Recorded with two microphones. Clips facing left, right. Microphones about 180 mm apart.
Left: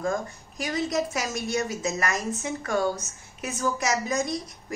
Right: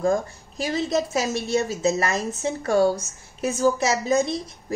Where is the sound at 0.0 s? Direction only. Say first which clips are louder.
Right 6 dB; 30° right (ahead or behind).